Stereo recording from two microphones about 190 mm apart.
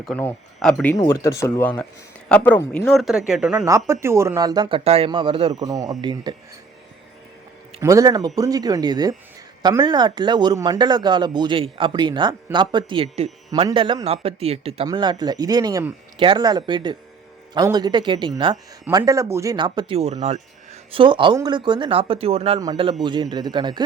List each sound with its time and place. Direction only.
0.0 s speech: 5° left (ahead or behind)
3.7 s speech: 15° right (ahead or behind)
4.8 s speech: 30° right (ahead or behind)
7.8 s speech: 15° right (ahead or behind); by 14.8 s 30° right (ahead or behind)
14.8 s speech: 20° right (ahead or behind); by 20.4 s 35° right (ahead or behind)
20.9 s speech: 25° right (ahead or behind)